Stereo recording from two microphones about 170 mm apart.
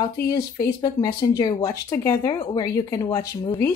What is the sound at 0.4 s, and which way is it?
Speech, 70° left (ahead or behind).